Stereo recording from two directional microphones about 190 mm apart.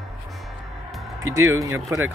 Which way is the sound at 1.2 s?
15° right (ahead or behind).